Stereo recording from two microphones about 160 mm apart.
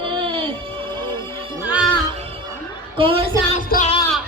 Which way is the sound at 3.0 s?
35° right (ahead or behind).